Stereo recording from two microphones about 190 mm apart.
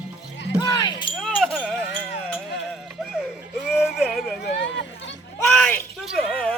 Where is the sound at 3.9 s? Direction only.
Centre (ahead or behind).